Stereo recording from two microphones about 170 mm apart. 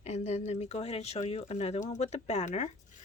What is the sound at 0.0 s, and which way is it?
Speech, 40° left (ahead or behind).